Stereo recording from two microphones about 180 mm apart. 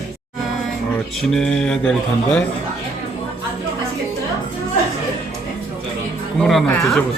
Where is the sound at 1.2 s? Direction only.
5° left (ahead or behind).